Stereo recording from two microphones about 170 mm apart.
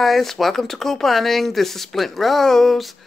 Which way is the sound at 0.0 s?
Centre (ahead or behind).